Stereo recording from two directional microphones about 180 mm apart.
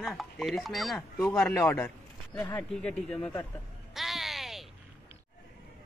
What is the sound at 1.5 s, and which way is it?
Speech, 15° left (ahead or behind).